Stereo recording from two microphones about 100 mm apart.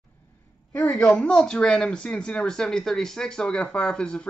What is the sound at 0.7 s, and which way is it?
Speech, 15° left (ahead or behind).